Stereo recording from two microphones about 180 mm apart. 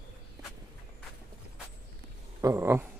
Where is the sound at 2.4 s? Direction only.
15° right (ahead or behind).